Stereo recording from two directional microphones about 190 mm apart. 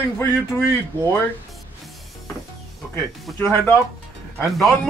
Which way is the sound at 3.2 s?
5° left (ahead or behind).